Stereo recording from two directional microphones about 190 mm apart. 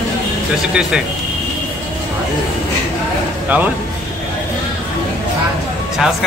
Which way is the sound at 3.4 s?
10° right (ahead or behind).